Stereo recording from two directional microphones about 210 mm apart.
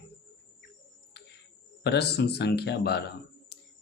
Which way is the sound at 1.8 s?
50° left (ahead or behind).